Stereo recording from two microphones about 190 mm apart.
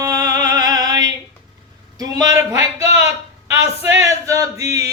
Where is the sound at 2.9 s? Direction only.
15° right (ahead or behind).